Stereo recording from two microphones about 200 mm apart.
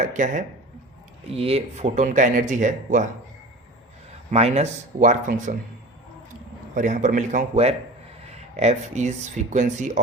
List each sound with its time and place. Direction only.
0.0 s speech: 40° right (ahead or behind)
4.3 s speech: 35° right (ahead or behind)
6.7 s speech: 40° right (ahead or behind)